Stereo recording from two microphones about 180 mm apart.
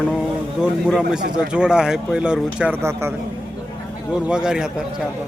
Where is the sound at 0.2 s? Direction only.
5° right (ahead or behind).